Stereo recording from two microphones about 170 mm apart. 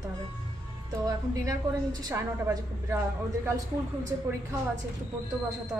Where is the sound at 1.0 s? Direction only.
20° right (ahead or behind).